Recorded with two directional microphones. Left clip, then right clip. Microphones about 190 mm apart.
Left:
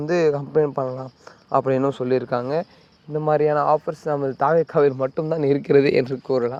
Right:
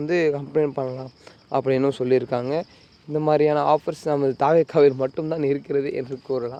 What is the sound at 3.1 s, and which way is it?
Speech, 20° right (ahead or behind).